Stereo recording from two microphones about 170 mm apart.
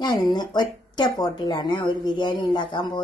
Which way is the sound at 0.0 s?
25° left (ahead or behind).